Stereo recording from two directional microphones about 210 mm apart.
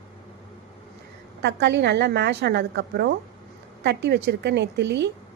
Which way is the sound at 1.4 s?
55° right (ahead or behind).